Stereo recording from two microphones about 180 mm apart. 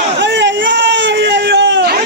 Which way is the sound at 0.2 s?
90° right.